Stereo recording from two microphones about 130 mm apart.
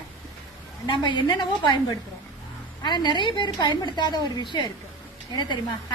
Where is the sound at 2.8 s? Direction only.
35° left (ahead or behind).